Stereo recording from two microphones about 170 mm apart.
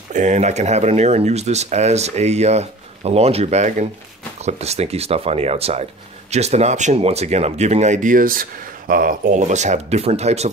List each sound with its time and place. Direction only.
0.1 s speech: 45° right (ahead or behind)